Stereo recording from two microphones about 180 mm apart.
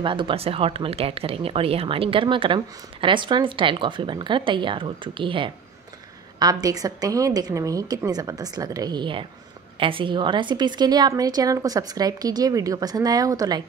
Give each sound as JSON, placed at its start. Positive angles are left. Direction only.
{"t": 0.0, "sound": "speech", "side_deg": -25}